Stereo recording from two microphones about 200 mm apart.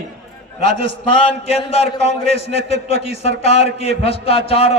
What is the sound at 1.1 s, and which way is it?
A man's voice, 25° left (ahead or behind).